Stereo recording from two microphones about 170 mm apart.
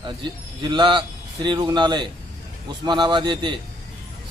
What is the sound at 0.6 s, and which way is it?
A man's voice, 25° right (ahead or behind).